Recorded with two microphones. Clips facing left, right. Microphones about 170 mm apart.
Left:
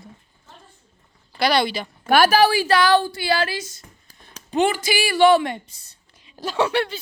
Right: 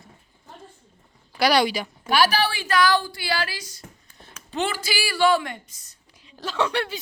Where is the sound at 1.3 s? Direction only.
10° right (ahead or behind).